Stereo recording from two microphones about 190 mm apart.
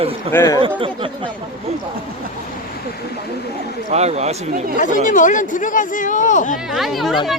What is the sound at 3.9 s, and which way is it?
Speech, 35° right (ahead or behind).